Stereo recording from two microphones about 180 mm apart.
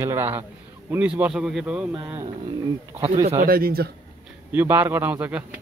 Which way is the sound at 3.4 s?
55° right (ahead or behind).